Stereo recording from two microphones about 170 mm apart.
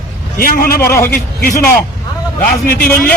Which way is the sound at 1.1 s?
60° left (ahead or behind).